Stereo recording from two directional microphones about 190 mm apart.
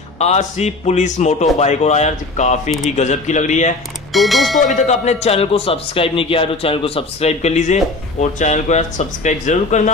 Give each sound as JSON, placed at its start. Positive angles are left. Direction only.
{"t": 0.2, "sound": "a man's voice", "side_deg": 35}
{"t": 4.1, "sound": "mechanisms", "side_deg": 0}
{"t": 4.6, "sound": "a man's voice", "side_deg": 40}